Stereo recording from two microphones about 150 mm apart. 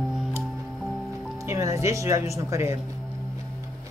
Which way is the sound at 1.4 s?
20° right (ahead or behind).